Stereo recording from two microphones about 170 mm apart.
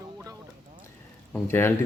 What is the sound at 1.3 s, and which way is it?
Speech, 15° left (ahead or behind).